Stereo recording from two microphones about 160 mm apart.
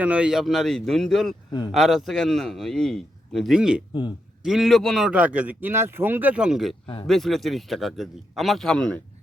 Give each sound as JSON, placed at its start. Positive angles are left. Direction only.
{"t": 0.0, "sound": "a man's voice", "side_deg": -10}
{"t": 1.5, "sound": "speech", "side_deg": 25}
{"t": 1.7, "sound": "a man's voice", "side_deg": 0}
{"t": 6.8, "sound": "speech", "side_deg": 35}
{"t": 7.1, "sound": "a man's voice", "side_deg": 0}